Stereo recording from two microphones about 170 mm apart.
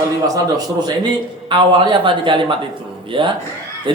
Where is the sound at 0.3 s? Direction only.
25° right (ahead or behind).